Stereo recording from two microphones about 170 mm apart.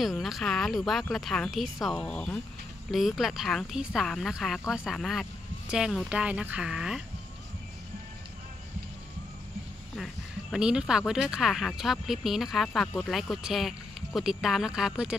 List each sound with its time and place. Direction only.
0.0 s speech: centre (ahead or behind)
9.9 s speech: centre (ahead or behind)